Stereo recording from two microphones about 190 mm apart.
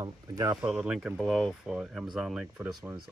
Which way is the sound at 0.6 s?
5° right (ahead or behind).